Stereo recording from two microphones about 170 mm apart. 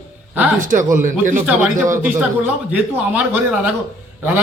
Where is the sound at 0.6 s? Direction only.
50° right (ahead or behind).